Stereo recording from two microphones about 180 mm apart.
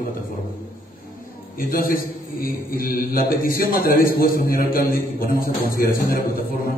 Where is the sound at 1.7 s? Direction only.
55° left (ahead or behind).